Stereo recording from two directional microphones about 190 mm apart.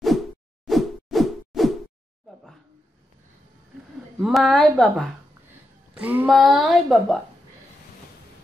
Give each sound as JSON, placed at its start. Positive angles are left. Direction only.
{"t": 0.7, "sound": "whoosh", "side_deg": 0}
{"t": 2.2, "sound": "a sound", "side_deg": 0}
{"t": 4.2, "sound": "speech", "side_deg": 0}
{"t": 5.9, "sound": "music", "side_deg": -10}
{"t": 6.2, "sound": "speech", "side_deg": 0}